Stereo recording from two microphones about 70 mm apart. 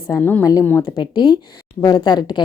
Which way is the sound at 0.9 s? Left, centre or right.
Left.